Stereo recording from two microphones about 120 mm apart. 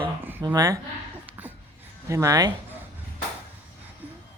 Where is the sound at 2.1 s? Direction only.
25° right (ahead or behind).